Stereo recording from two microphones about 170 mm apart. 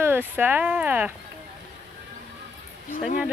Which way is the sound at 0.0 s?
10° right (ahead or behind).